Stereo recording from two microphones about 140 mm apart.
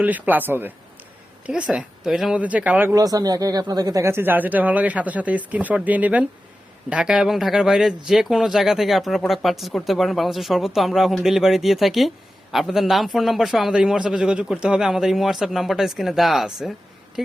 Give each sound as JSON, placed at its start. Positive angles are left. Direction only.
{"t": 0.0, "sound": "speech", "side_deg": -10}
{"t": 2.9, "sound": "speech", "side_deg": -25}